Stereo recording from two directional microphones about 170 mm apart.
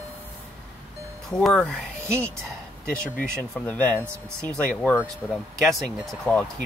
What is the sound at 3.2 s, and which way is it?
Speech, 5° left (ahead or behind).